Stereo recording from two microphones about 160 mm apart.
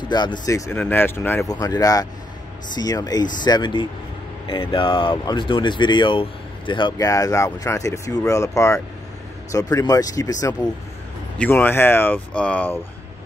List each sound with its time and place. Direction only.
0.1 s speech: 25° left (ahead or behind)
11.3 s speech: 10° left (ahead or behind)